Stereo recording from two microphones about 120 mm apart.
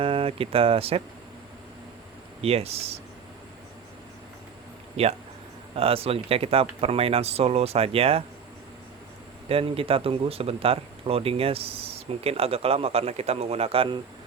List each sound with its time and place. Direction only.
0.0 s speech: 50° right (ahead or behind)
2.4 s speech: 55° right (ahead or behind)
5.0 s speech: 60° right (ahead or behind)
9.5 s speech: 50° right (ahead or behind)